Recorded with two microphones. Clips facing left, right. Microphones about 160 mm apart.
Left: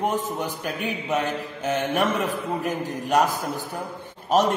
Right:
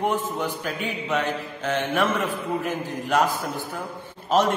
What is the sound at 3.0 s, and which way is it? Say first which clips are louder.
Speech: left 1 dB; 15° left (ahead or behind).